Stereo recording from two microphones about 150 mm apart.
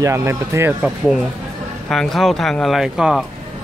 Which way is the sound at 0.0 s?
20° right (ahead or behind).